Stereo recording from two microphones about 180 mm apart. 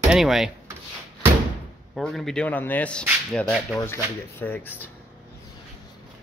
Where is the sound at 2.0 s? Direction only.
Centre (ahead or behind).